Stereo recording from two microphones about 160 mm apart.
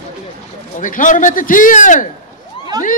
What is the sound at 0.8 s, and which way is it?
A man's voice, 55° left (ahead or behind).